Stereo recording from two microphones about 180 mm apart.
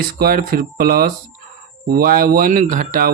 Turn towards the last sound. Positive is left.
turn(degrees=-50)  # may be behind; listen again after turning